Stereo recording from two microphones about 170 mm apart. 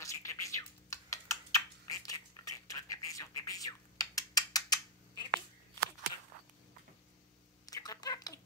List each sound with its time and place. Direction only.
0.0 s typing: 20° left (ahead or behind)
7.6 s fowl: 20° left (ahead or behind)